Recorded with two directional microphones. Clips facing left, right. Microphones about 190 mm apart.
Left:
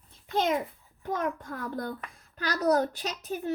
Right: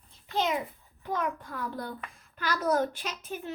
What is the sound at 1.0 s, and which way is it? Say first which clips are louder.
A child's voice: left 1 dB; 45° left (ahead or behind).